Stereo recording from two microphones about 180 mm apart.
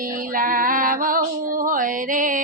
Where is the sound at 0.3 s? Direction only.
50° right (ahead or behind).